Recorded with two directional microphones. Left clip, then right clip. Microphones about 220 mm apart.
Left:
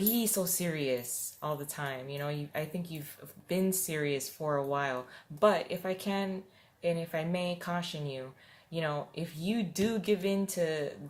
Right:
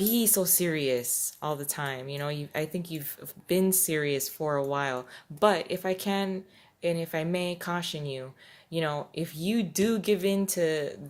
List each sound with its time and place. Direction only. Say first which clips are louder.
0.1 s speech: right 5 dB; 40° right (ahead or behind)